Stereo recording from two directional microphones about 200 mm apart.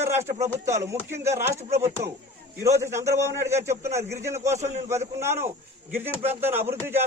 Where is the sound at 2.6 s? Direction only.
15° right (ahead or behind).